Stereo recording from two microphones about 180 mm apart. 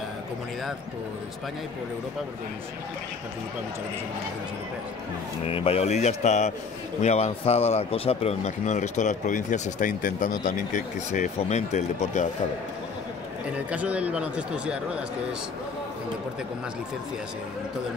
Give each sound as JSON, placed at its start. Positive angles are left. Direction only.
{"t": 5.5, "sound": "speech", "side_deg": 30}
{"t": 13.7, "sound": "speech", "side_deg": -5}